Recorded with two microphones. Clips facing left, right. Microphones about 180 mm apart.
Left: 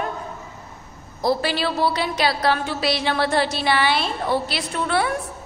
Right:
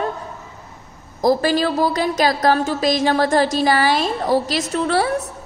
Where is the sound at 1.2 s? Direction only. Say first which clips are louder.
Right 5 dB; 45° right (ahead or behind).